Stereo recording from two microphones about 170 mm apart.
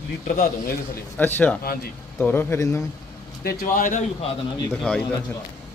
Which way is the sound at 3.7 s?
50° left (ahead or behind).